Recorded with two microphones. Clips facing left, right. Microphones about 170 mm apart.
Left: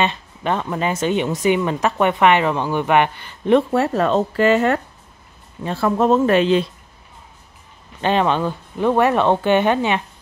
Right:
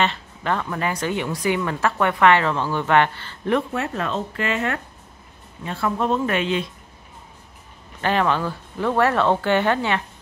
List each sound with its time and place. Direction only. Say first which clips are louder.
0.0 s speech: left 2 dB; 20° left (ahead or behind)
3.7 s speech: left 8 dB; 35° left (ahead or behind)
8.0 s speech: left 3 dB; 20° left (ahead or behind)